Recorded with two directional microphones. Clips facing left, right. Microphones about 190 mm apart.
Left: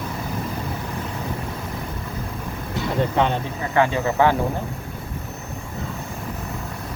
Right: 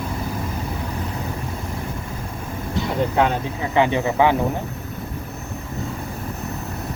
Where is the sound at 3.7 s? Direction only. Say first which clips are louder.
Right 1 dB; 20° right (ahead or behind).